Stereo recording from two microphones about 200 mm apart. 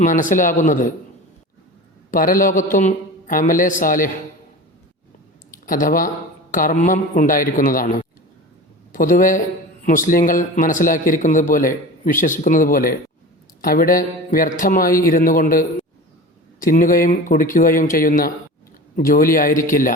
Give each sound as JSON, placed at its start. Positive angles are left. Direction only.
{"t": 0.0, "sound": "a man's voice", "side_deg": 40}
{"t": 2.0, "sound": "a man's voice", "side_deg": 45}
{"t": 5.6, "sound": "a man's voice", "side_deg": 45}